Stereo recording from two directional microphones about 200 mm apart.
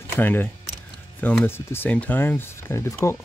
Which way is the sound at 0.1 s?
10° left (ahead or behind).